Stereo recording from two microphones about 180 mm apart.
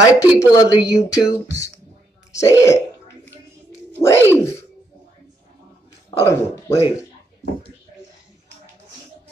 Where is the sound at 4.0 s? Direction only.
15° left (ahead or behind).